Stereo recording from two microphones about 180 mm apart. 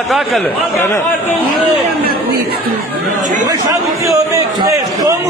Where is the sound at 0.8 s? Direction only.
15° left (ahead or behind).